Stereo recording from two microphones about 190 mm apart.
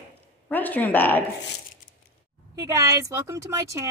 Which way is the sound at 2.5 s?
15° right (ahead or behind).